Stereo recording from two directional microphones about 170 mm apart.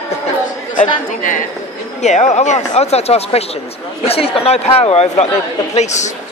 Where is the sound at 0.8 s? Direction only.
50° left (ahead or behind).